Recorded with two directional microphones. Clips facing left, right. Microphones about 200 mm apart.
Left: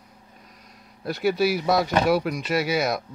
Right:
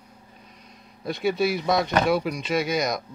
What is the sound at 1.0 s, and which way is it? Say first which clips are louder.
Speech: left 1 dB; 5° left (ahead or behind).